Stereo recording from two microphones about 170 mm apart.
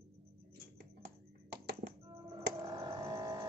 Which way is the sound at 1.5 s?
80° right.